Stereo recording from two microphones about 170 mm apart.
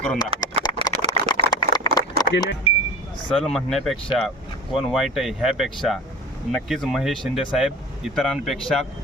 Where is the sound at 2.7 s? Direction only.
30° left (ahead or behind).